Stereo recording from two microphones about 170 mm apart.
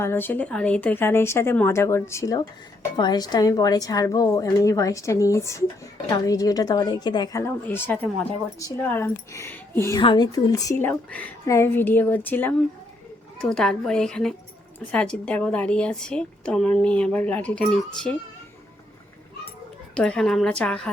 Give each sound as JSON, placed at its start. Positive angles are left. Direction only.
{"t": 0.0, "sound": "a woman's voice", "side_deg": 15}
{"t": 10.0, "sound": "a woman's voice", "side_deg": 25}
{"t": 19.9, "sound": "a woman's voice", "side_deg": 5}